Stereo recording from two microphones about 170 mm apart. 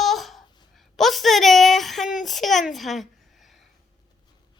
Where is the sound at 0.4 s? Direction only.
25° left (ahead or behind).